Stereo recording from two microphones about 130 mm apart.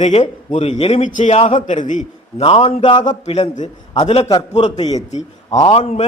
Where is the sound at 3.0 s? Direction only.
65° left (ahead or behind).